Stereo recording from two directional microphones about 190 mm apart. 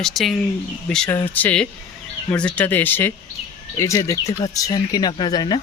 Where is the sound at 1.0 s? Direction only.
10° left (ahead or behind).